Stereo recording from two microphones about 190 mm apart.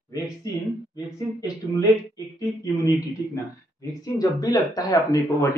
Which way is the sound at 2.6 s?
20° left (ahead or behind).